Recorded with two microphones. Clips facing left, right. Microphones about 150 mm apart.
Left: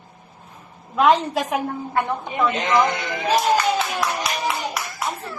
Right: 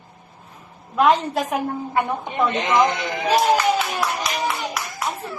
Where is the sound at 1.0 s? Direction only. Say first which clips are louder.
Even; centre (ahead or behind).